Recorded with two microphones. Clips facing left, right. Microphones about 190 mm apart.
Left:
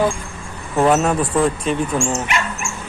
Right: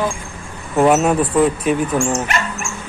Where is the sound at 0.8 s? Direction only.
5° right (ahead or behind).